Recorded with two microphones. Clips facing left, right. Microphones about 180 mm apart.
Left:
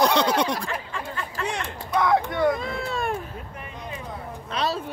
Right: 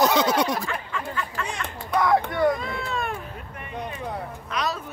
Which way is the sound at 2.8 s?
35° left (ahead or behind).